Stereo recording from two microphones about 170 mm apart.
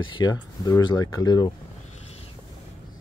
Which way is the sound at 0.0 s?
25° left (ahead or behind).